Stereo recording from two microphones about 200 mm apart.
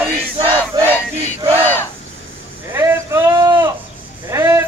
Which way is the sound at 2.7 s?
15° right (ahead or behind).